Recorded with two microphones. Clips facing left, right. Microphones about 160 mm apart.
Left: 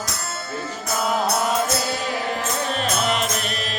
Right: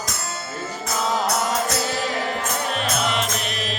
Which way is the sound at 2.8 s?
40° left (ahead or behind).